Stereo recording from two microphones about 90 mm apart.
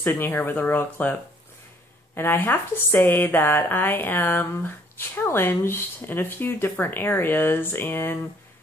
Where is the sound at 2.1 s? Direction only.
20° left (ahead or behind).